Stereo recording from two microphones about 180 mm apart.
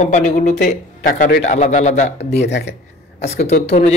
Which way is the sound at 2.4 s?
70° left (ahead or behind).